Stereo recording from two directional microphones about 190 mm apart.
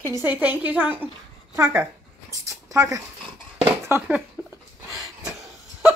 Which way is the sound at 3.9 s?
15° right (ahead or behind).